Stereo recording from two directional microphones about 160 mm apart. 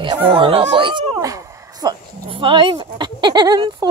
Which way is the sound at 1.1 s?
20° right (ahead or behind).